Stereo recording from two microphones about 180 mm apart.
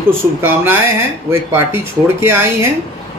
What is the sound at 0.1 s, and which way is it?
Speech, 15° right (ahead or behind).